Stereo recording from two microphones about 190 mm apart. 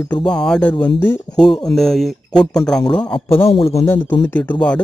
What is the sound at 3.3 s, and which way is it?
Speech, 30° left (ahead or behind).